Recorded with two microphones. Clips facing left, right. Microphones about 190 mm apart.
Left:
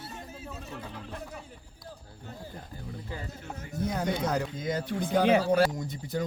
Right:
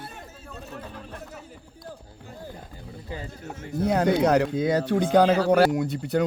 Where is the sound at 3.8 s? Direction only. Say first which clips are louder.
Right 9 dB; 65° right (ahead or behind).